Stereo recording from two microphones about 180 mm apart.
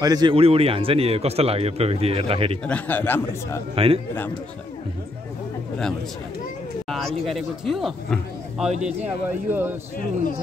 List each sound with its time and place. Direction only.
0.0 s a man's voice: 20° right (ahead or behind)
2.6 s a man's voice: 10° left (ahead or behind)
3.7 s a man's voice: 30° right (ahead or behind)
6.9 s speech: centre (ahead or behind)